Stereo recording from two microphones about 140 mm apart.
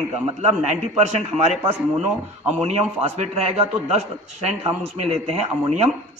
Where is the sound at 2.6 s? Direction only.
50° right (ahead or behind).